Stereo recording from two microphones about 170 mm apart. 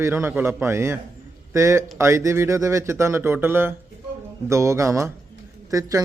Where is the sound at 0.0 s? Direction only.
15° right (ahead or behind).